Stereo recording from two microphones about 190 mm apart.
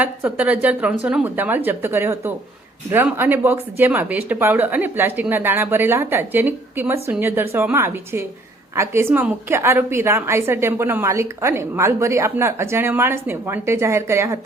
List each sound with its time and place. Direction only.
0.0 s a woman's voice: 10° right (ahead or behind)